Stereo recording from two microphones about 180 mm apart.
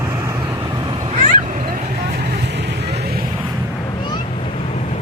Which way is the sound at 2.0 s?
65° right (ahead or behind).